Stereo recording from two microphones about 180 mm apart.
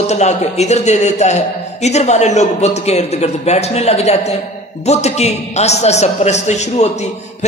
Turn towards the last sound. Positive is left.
turn(degrees=40)  # may be behind; listen again after turning